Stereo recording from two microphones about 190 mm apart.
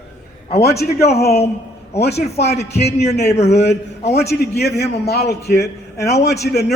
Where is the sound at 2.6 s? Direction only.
60° left (ahead or behind).